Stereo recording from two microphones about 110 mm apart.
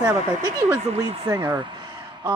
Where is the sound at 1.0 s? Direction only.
50° right (ahead or behind).